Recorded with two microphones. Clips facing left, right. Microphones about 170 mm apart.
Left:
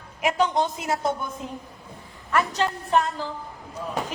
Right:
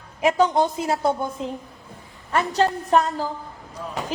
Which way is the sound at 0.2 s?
35° right (ahead or behind).